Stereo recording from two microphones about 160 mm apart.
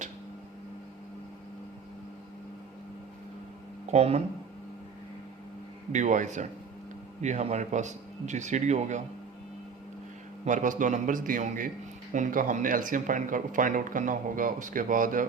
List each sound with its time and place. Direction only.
3.9 s speech: 40° right (ahead or behind)
5.9 s a man's voice: 50° right (ahead or behind)
10.4 s a man's voice: 55° right (ahead or behind)